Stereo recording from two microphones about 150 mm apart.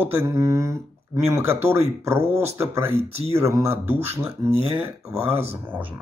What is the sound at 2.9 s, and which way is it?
Speech, 45° right (ahead or behind).